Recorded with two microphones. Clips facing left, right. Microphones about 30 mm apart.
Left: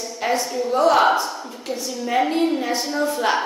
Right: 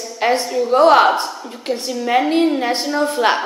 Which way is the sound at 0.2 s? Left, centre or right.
Right.